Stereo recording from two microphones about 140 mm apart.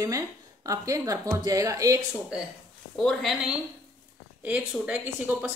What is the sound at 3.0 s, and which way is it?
Speech, 5° left (ahead or behind).